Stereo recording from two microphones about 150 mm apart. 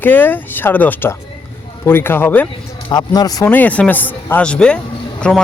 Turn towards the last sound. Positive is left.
turn(degrees=5)  # may be behind; listen again after turning